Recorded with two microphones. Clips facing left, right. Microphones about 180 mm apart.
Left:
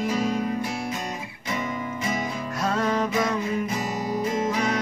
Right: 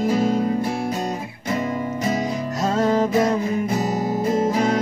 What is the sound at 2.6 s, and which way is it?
Music, 25° right (ahead or behind).